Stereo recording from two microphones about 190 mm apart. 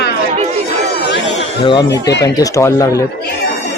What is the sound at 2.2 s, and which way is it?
Speech, 15° left (ahead or behind).